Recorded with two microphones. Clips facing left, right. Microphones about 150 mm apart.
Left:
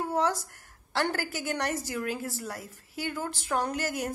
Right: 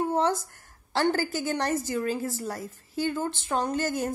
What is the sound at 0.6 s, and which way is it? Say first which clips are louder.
A woman's voice: right 3 dB; 30° right (ahead or behind).